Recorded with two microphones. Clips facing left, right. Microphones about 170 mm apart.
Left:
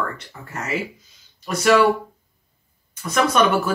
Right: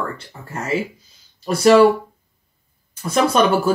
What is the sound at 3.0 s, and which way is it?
Speech, 30° right (ahead or behind).